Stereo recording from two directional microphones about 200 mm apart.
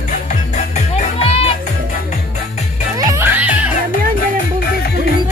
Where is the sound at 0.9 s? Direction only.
30° left (ahead or behind).